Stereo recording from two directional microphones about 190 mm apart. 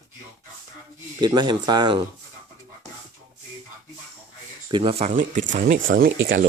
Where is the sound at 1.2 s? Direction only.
20° right (ahead or behind).